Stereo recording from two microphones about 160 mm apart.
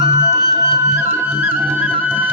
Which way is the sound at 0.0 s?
20° right (ahead or behind).